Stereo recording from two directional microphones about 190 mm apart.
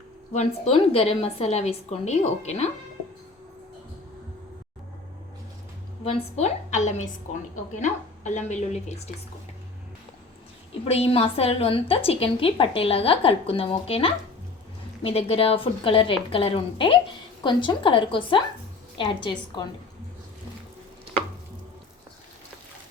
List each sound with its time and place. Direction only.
0.3 s a woman's voice: 35° left (ahead or behind)
6.1 s a woman's voice: 35° left (ahead or behind)
10.8 s a woman's voice: 30° left (ahead or behind)